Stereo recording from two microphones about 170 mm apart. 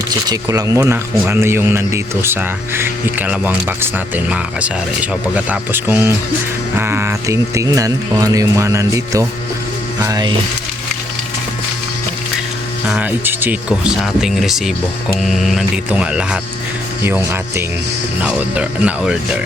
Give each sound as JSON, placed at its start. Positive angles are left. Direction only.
{"t": 0.3, "sound": "speech", "side_deg": -20}
{"t": 10.0, "sound": "music", "side_deg": -20}
{"t": 12.9, "sound": "speech", "side_deg": -10}